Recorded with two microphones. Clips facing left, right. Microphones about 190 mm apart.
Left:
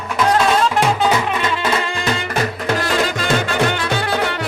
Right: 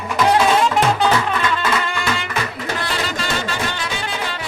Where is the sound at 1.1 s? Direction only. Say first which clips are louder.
Even; 25° left (ahead or behind); by 3.0 s 45° left (ahead or behind).